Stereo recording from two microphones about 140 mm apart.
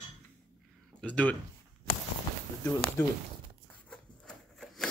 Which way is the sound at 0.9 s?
10° left (ahead or behind).